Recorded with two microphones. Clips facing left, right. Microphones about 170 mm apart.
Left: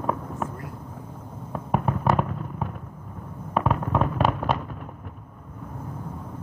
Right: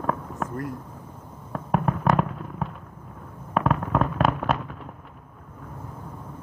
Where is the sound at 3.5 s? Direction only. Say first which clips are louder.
Right 1 dB; centre (ahead or behind).